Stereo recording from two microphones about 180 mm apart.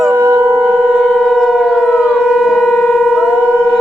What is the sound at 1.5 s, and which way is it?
Civil defense siren, 5° left (ahead or behind).